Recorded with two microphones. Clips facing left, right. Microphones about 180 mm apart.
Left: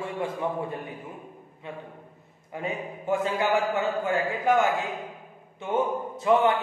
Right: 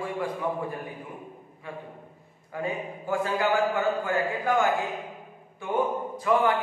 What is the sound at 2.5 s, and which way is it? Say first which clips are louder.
A man's voice: right 1 dB; 20° left (ahead or behind).